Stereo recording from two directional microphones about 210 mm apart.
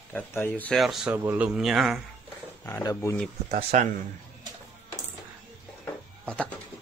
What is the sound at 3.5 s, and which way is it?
Speech, 35° right (ahead or behind).